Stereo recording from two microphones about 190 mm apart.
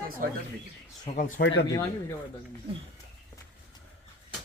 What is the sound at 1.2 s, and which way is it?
Speech, 50° left (ahead or behind).